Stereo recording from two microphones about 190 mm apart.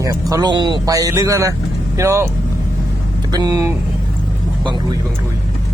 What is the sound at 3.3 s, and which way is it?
Speech, 20° right (ahead or behind).